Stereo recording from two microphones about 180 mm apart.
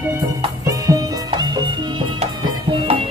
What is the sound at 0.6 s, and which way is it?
Music, 20° right (ahead or behind).